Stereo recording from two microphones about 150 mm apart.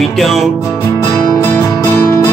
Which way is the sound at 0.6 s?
20° left (ahead or behind).